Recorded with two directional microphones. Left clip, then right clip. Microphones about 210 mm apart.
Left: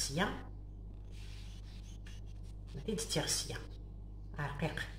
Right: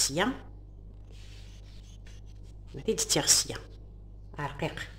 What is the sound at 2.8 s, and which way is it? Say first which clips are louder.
Speech: right 10 dB; 50° right (ahead or behind).